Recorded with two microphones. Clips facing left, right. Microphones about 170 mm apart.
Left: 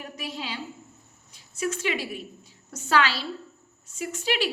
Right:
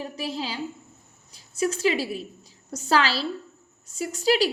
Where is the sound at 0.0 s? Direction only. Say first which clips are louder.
Right 5 dB; 35° right (ahead or behind).